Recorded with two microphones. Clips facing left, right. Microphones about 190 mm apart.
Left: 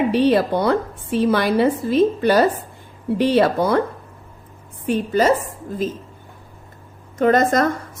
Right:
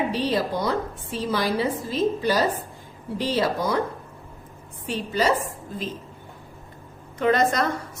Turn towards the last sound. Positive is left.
turn(degrees=50)  # may be behind; listen again after turning